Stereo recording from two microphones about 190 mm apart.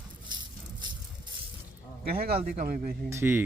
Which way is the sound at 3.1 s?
10° right (ahead or behind).